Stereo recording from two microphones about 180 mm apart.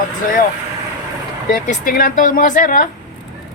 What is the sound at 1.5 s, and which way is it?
Speech, 50° left (ahead or behind).